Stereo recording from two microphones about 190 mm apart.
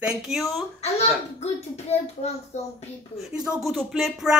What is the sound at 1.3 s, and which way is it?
Speech, 35° left (ahead or behind).